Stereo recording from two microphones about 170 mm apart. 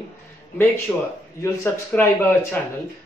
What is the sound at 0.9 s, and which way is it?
A man's voice, 10° left (ahead or behind).